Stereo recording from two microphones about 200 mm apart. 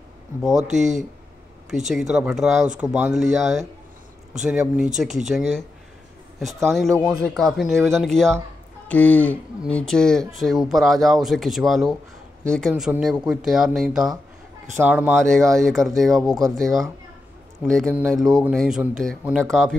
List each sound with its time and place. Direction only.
0.4 s speech: centre (ahead or behind)
15.1 s speech: 5° left (ahead or behind)
16.3 s speech: 20° right (ahead or behind)
16.5 s speech: centre (ahead or behind)